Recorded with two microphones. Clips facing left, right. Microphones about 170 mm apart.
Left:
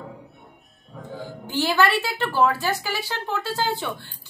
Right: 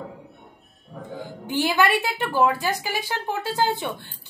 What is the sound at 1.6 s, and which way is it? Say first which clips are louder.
A woman's voice: even; 15° right (ahead or behind).